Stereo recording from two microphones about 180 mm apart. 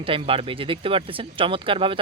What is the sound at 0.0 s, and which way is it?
Speech, 30° right (ahead or behind).